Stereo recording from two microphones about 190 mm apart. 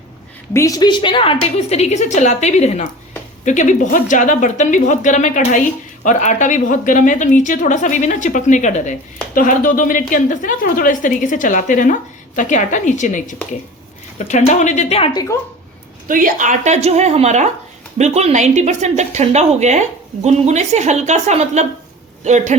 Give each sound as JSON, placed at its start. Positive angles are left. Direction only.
{"t": 0.5, "sound": "a woman's voice", "side_deg": 15}
{"t": 16.0, "sound": "speech", "side_deg": -45}